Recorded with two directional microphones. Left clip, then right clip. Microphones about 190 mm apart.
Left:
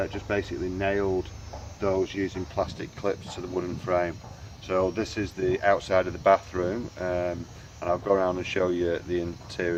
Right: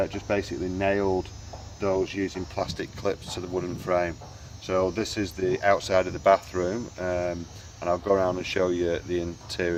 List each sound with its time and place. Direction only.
0.0 s speech: 30° right (ahead or behind)